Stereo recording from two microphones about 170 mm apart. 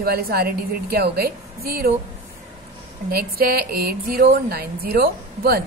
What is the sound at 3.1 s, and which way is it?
A woman's voice, 65° right (ahead or behind).